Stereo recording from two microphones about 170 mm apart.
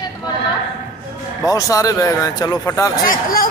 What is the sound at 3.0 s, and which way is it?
Speech, 55° left (ahead or behind).